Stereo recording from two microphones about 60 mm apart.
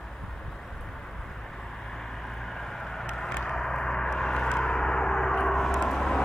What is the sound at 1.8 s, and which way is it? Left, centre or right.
Vehicle, centre.